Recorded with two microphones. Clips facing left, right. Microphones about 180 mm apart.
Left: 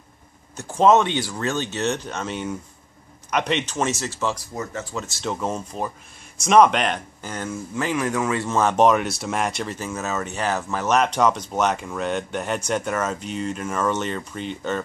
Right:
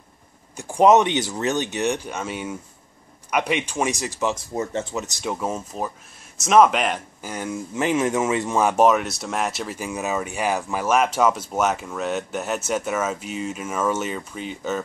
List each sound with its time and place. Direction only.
0.6 s speech: 15° right (ahead or behind)